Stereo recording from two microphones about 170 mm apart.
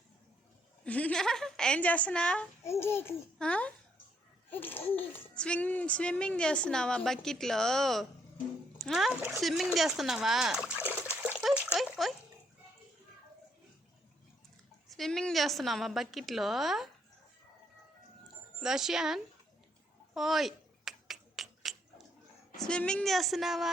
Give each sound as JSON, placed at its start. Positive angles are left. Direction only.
{"t": 0.9, "sound": "a woman's voice", "side_deg": 10}
{"t": 14.8, "sound": "speech", "side_deg": 0}
{"t": 18.6, "sound": "speech", "side_deg": 0}
{"t": 20.1, "sound": "finger snapping", "side_deg": 0}
{"t": 22.5, "sound": "speech", "side_deg": 5}